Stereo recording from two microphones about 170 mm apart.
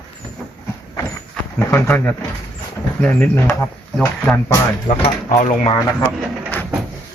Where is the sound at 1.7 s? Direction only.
15° left (ahead or behind).